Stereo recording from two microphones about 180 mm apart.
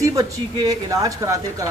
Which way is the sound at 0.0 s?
20° right (ahead or behind).